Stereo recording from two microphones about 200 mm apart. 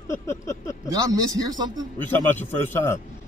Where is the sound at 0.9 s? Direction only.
20° right (ahead or behind).